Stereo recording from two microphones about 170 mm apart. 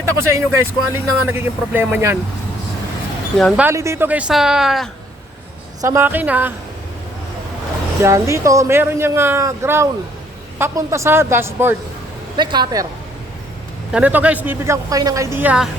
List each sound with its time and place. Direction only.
0.0 s speech: 15° right (ahead or behind)
3.6 s speech: 15° right (ahead or behind)
5.8 s speech: 15° right (ahead or behind)
8.0 s speech: 15° right (ahead or behind)
12.4 s speech: 25° right (ahead or behind)
13.9 s speech: 10° right (ahead or behind)